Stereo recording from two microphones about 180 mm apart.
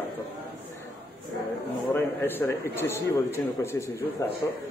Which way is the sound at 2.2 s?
10° left (ahead or behind).